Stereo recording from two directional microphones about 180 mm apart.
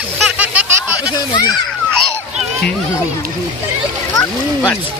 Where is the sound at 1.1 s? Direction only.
25° left (ahead or behind).